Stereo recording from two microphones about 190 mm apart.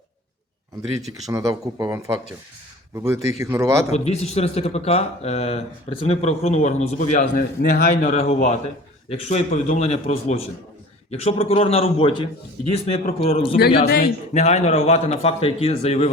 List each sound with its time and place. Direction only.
1.3 s speech: 15° right (ahead or behind)
3.9 s speech: 35° left (ahead or behind); by 8.1 s 55° left (ahead or behind)
8.1 s speech: 35° left (ahead or behind)
13.8 s a man's voice: 55° left (ahead or behind)
14.3 s speech: 35° left (ahead or behind)